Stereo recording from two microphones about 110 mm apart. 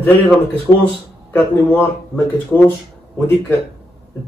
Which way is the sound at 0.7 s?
55° left (ahead or behind).